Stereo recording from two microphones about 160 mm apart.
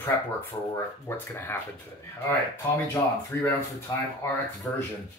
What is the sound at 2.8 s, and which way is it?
Speech, 15° left (ahead or behind).